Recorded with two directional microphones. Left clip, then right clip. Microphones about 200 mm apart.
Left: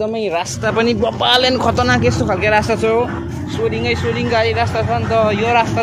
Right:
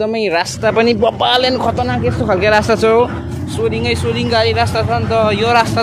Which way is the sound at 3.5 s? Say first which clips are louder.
Right 1 dB; 20° right (ahead or behind).